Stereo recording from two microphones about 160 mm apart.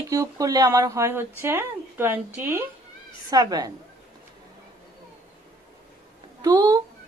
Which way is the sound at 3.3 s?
25° right (ahead or behind).